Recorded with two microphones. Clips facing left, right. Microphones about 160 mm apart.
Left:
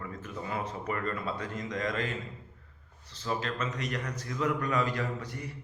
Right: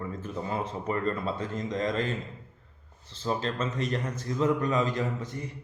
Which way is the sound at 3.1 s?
30° right (ahead or behind).